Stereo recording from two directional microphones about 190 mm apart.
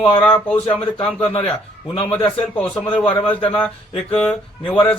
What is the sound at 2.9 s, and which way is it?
Speech, 25° left (ahead or behind).